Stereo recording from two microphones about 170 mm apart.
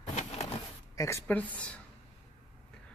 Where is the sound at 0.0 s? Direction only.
45° left (ahead or behind).